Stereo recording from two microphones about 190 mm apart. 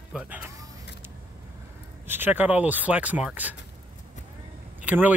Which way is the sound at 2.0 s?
10° right (ahead or behind).